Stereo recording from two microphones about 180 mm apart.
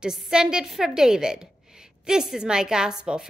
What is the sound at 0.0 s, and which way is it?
A woman's voice, 5° right (ahead or behind).